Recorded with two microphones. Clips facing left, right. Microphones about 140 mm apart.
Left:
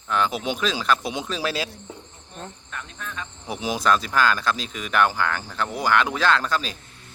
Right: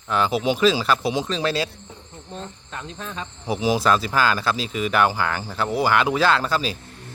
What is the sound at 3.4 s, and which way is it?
Speech, 5° right (ahead or behind).